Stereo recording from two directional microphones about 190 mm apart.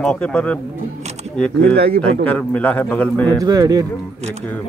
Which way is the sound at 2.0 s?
5° left (ahead or behind).